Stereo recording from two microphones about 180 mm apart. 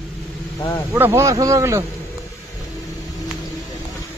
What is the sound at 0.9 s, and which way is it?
Speech, 15° right (ahead or behind).